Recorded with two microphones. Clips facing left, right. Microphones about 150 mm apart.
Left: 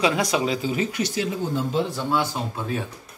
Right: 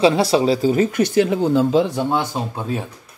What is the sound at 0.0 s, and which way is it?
Speech, 30° right (ahead or behind).